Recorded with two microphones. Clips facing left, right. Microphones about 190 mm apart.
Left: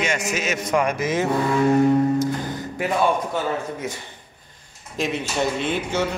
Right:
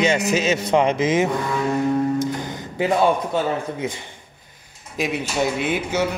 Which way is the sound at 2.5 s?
20° right (ahead or behind).